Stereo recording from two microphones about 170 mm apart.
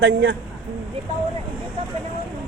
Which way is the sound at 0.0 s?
90° right.